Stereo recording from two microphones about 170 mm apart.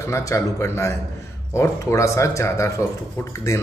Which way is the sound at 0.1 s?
20° left (ahead or behind).